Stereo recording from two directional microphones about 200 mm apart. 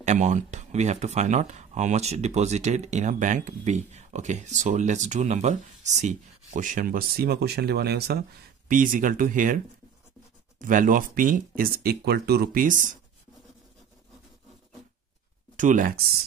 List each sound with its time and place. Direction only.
0.0 s speech: 35° right (ahead or behind)
10.6 s speech: 40° right (ahead or behind)
15.5 s speech: 40° right (ahead or behind)